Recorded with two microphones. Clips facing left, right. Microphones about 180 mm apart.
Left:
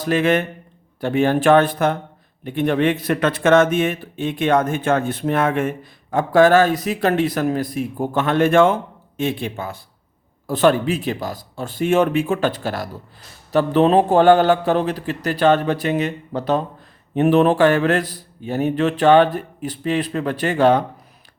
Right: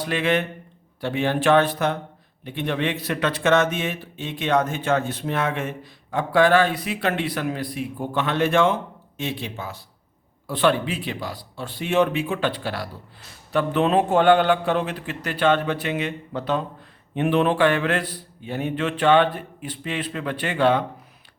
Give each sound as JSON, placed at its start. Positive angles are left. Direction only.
{"t": 0.0, "sound": "speech", "side_deg": 45}